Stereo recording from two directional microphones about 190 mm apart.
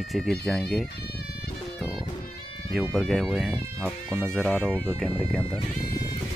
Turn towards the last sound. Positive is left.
turn(degrees=5)  # may be behind; listen again after turning